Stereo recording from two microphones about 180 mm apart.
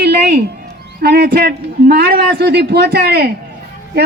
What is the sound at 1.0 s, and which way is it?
A man's voice, 65° right (ahead or behind).